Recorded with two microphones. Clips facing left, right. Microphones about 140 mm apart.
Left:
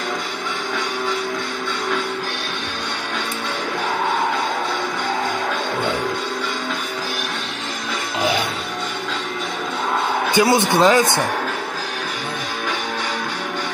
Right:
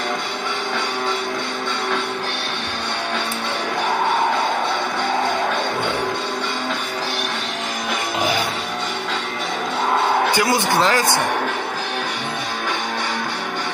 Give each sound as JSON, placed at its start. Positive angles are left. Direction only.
{"t": 10.3, "sound": "speech", "side_deg": 20}